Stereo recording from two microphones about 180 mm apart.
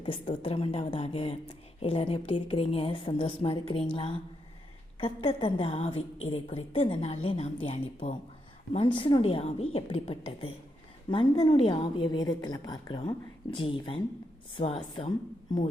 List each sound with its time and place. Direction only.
0.0 s a woman's voice: 30° left (ahead or behind)
4.9 s a woman's voice: 30° left (ahead or behind)